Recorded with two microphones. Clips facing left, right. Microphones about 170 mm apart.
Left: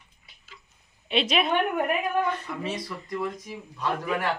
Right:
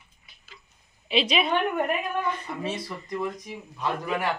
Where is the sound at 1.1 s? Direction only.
Centre (ahead or behind).